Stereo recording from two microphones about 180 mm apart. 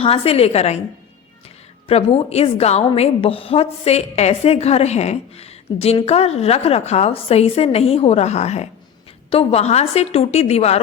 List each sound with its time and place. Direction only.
0.0 s a woman's voice: 35° left (ahead or behind)
1.9 s a woman's voice: 35° left (ahead or behind)